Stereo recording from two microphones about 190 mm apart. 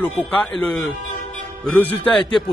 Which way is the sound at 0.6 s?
5° left (ahead or behind).